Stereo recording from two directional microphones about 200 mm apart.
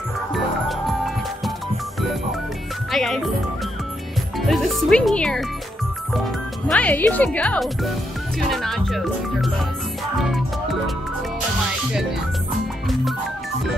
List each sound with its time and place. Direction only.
0.3 s music: centre (ahead or behind)
2.9 s music: centre (ahead or behind)
4.4 s speech: centre (ahead or behind)
6.7 s speech: 5° left (ahead or behind)
10.1 s music: centre (ahead or behind)
12.8 s music: centre (ahead or behind)